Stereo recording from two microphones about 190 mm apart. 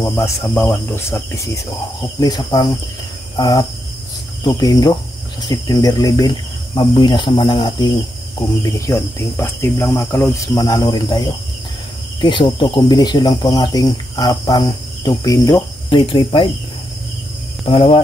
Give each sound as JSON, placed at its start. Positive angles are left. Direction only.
{"t": 0.0, "sound": "cricket", "side_deg": 15}
{"t": 2.0, "sound": "speech", "side_deg": 20}
{"t": 8.4, "sound": "cricket", "side_deg": 15}
{"t": 12.2, "sound": "speech", "side_deg": 25}
{"t": 17.6, "sound": "speech", "side_deg": 30}